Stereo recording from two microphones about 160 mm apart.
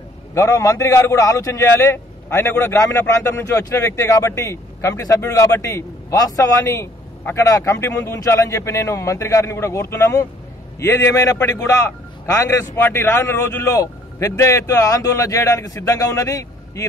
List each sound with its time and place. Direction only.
0.3 s a man's voice: 20° left (ahead or behind)